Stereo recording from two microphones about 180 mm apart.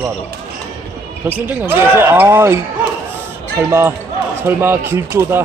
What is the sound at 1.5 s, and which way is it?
Speech, 10° right (ahead or behind).